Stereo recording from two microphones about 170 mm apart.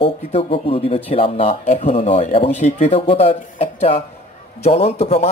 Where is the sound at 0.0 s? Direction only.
35° left (ahead or behind).